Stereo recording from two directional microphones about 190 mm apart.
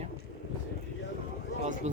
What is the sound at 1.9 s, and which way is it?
Speech, 40° right (ahead or behind).